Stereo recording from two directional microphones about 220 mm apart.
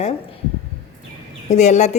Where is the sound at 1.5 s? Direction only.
30° left (ahead or behind).